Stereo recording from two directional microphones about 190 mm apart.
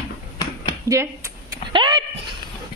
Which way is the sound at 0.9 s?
15° right (ahead or behind).